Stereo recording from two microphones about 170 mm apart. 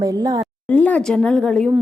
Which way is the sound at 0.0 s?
20° right (ahead or behind).